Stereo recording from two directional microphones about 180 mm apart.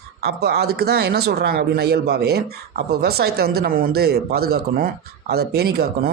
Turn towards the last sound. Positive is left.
turn(degrees=-60)  # may be behind; listen again after turning